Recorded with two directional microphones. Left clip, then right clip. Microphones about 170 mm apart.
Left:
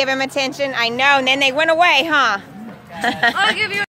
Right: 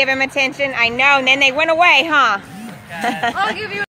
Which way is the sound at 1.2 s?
90° left.